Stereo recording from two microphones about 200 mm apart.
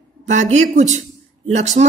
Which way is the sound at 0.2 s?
35° right (ahead or behind).